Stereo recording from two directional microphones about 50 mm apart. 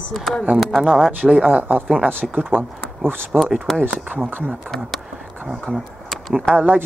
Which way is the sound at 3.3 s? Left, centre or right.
Right.